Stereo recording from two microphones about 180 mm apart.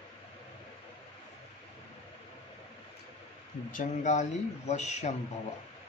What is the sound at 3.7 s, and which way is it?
Speech, 40° left (ahead or behind).